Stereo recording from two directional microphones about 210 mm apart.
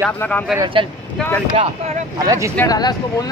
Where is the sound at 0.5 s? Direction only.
20° right (ahead or behind).